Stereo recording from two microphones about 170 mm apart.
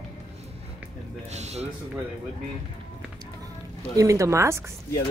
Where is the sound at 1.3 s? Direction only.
40° right (ahead or behind).